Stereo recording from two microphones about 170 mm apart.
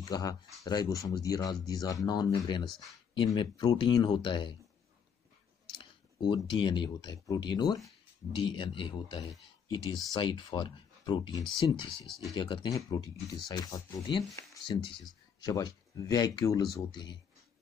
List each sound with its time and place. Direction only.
0.0 s speech: 20° left (ahead or behind)
5.8 s speech: 30° left (ahead or behind)